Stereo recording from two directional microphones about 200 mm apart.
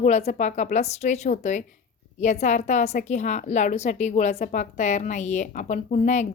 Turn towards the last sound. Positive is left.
turn(degrees=35)  # may be behind; listen again after turning